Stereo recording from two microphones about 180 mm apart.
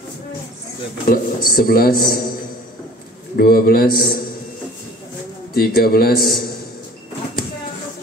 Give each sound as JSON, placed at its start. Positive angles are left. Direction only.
{"t": 1.0, "sound": "a man's voice", "side_deg": 50}
{"t": 3.3, "sound": "a man's voice", "side_deg": 55}
{"t": 5.5, "sound": "a man's voice", "side_deg": 55}